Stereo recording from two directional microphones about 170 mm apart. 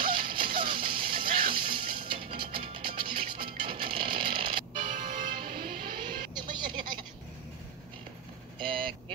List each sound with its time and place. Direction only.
0.0 s music: 30° right (ahead or behind)
4.9 s music: 55° right (ahead or behind)
6.3 s a sound: 25° right (ahead or behind)
8.5 s vehicle: 30° right (ahead or behind)